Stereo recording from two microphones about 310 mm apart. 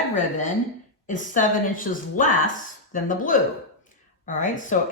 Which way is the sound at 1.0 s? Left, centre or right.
Left.